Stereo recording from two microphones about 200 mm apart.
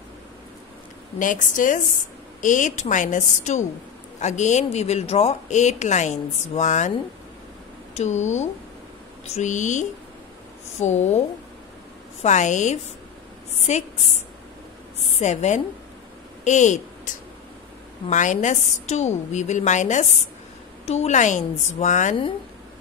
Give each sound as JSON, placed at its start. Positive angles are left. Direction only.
{"t": 1.2, "sound": "speech", "side_deg": 40}
{"t": 7.9, "sound": "speech", "side_deg": 35}